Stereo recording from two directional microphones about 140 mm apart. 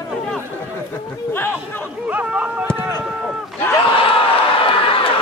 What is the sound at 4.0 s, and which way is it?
Crowd, 40° left (ahead or behind).